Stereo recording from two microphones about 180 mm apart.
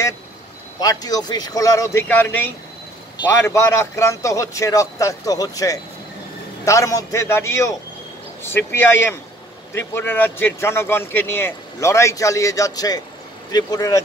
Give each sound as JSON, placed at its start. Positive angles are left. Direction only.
{"t": 0.7, "sound": "a man's voice", "side_deg": 20}